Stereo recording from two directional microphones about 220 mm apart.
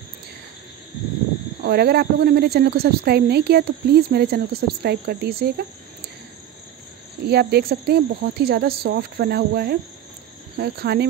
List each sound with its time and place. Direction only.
1.6 s speech: 45° right (ahead or behind)
7.2 s speech: 45° right (ahead or behind)